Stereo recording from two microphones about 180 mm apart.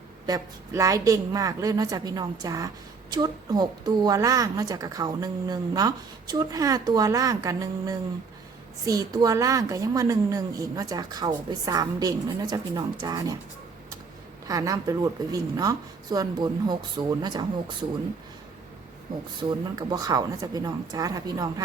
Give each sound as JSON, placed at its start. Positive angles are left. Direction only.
{"t": 0.3, "sound": "a woman's voice", "side_deg": -20}
{"t": 14.4, "sound": "a woman's voice", "side_deg": -20}
{"t": 19.4, "sound": "a woman's voice", "side_deg": -25}